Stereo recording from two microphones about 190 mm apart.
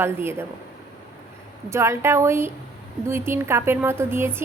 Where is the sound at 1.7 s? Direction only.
15° right (ahead or behind).